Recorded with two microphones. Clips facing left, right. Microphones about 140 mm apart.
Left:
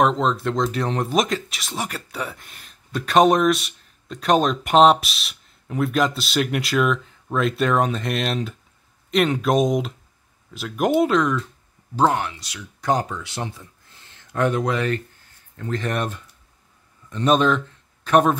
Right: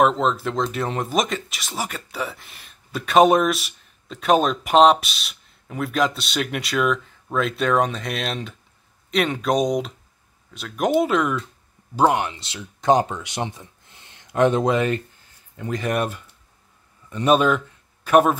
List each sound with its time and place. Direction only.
0.0 s speech: centre (ahead or behind)